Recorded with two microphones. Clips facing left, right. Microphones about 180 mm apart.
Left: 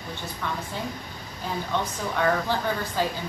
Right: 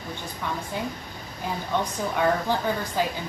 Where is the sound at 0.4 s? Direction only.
15° right (ahead or behind).